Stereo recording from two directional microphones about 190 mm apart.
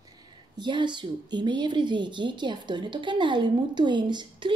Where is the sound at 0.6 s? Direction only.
25° right (ahead or behind).